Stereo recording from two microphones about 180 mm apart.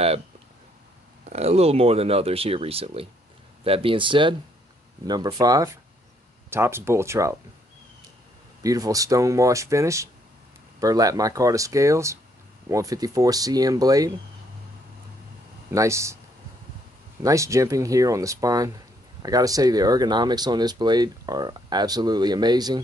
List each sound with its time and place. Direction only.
1.3 s speech: 35° right (ahead or behind); by 7.3 s 15° right (ahead or behind)
8.6 s speech: 20° right (ahead or behind)
15.7 s speech: 15° right (ahead or behind)
17.2 s speech: 15° right (ahead or behind)